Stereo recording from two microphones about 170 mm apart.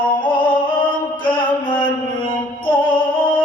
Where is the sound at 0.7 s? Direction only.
30° left (ahead or behind).